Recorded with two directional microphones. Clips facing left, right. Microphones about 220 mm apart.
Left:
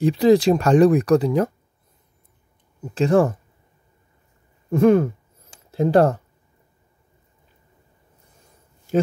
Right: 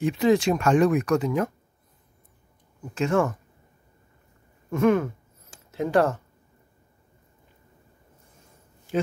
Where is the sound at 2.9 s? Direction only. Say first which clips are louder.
Left 6 dB; 35° left (ahead or behind).